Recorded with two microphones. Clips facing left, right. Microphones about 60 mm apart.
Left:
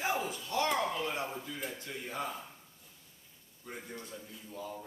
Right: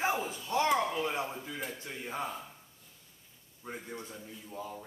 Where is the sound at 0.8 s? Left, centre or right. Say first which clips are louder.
Right 2 dB; centre.